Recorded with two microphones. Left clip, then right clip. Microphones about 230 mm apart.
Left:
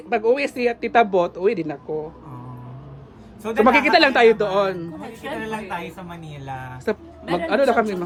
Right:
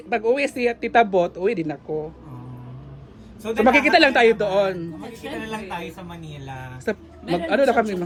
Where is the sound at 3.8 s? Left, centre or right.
Centre.